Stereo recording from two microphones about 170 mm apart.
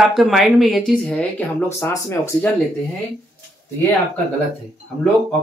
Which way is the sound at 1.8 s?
15° left (ahead or behind).